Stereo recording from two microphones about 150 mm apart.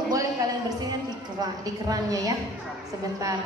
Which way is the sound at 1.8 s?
25° right (ahead or behind).